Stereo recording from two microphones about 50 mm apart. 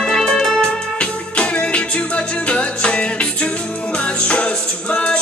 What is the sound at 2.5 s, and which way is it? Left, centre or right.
Music, left.